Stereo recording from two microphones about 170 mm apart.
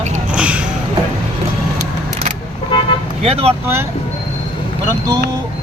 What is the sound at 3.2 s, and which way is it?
Speech, 35° right (ahead or behind).